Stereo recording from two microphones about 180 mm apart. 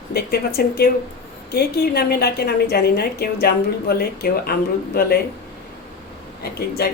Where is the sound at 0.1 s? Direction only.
60° left (ahead or behind).